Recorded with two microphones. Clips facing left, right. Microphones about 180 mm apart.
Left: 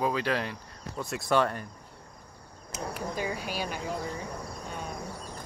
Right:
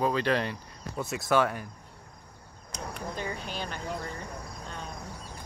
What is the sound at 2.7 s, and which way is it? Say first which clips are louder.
Speech: left 3 dB; 5° left (ahead or behind).